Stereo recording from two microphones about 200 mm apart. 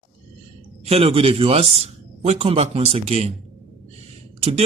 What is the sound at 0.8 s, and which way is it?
Speech, 30° right (ahead or behind).